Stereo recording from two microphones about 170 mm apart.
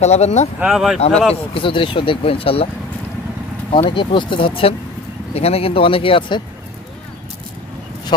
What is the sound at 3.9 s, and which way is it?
Speech, 30° left (ahead or behind).